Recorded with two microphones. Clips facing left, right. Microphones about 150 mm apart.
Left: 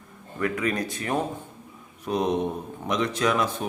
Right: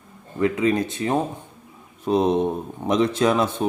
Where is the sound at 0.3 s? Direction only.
25° right (ahead or behind).